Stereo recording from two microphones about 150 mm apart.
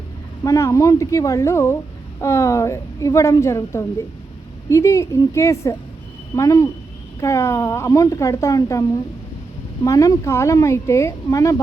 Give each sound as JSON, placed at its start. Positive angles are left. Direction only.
{"t": 0.4, "sound": "speech", "side_deg": 20}
{"t": 9.8, "sound": "speech", "side_deg": 20}